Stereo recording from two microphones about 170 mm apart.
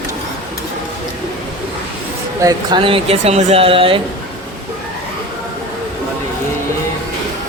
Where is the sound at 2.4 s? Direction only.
25° right (ahead or behind).